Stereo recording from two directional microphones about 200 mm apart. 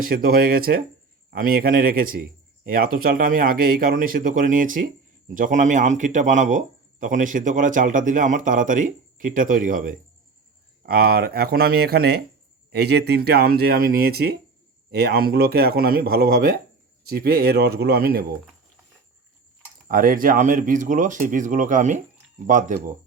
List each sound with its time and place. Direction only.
0.0 s a man's voice: 45° right (ahead or behind)
19.9 s a man's voice: 45° right (ahead or behind)